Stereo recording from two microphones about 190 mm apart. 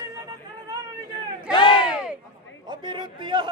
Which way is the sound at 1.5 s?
25° left (ahead or behind).